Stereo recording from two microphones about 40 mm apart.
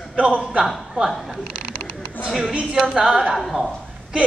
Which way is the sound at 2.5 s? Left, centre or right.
Centre.